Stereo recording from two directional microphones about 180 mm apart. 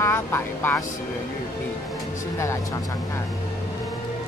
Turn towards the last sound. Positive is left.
turn(degrees=15)  # may be behind; listen again after turning